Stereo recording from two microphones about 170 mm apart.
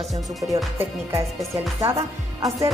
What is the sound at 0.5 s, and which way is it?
Speech, 15° right (ahead or behind).